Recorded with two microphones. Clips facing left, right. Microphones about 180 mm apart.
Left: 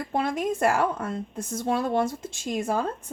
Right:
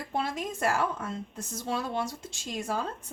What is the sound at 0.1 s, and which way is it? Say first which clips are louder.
A woman's voice: left 6 dB; 55° left (ahead or behind).